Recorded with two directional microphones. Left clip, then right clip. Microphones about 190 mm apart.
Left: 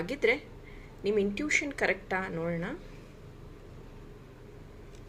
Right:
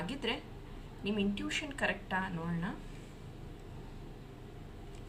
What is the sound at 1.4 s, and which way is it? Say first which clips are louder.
A woman's voice: left 7 dB; 35° left (ahead or behind).